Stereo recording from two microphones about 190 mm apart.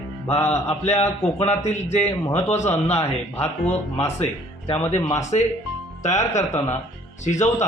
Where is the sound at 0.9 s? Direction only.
35° left (ahead or behind).